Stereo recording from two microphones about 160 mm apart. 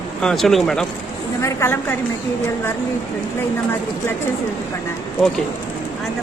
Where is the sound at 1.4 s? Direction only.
15° left (ahead or behind).